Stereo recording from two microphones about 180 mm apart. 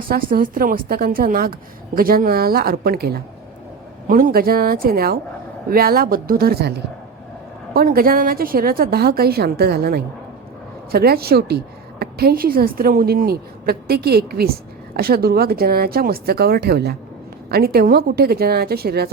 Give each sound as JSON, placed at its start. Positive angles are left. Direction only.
{"t": 0.0, "sound": "a woman's voice", "side_deg": -55}